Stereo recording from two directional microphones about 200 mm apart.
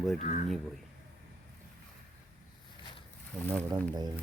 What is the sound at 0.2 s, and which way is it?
Speech, 35° left (ahead or behind).